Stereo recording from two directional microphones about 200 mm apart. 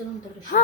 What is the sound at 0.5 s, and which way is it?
Speech, 40° left (ahead or behind).